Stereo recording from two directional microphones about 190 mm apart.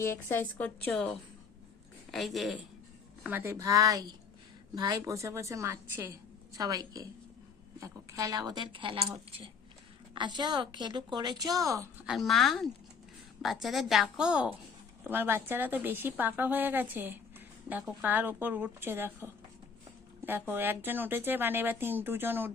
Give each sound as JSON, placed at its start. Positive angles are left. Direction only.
{"t": 0.0, "sound": "a woman's voice", "side_deg": 10}
{"t": 2.1, "sound": "a woman's voice", "side_deg": 0}
{"t": 3.2, "sound": "a woman's voice", "side_deg": -10}
{"t": 12.0, "sound": "a woman's voice", "side_deg": 0}